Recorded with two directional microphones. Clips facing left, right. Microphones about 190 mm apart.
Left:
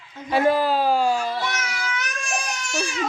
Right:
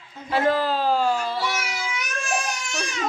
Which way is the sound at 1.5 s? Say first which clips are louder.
Right 1 dB; 10° right (ahead or behind).